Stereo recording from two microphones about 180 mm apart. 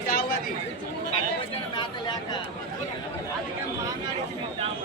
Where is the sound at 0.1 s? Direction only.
55° left (ahead or behind).